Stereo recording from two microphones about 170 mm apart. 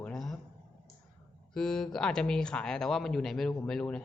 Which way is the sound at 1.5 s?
5° left (ahead or behind).